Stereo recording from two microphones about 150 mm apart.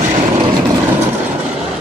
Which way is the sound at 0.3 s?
30° right (ahead or behind).